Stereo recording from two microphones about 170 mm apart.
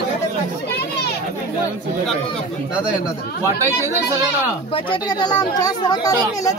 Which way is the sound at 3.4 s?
15° right (ahead or behind).